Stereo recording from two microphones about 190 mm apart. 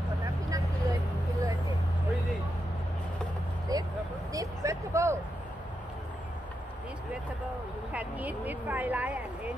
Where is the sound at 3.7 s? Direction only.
20° right (ahead or behind).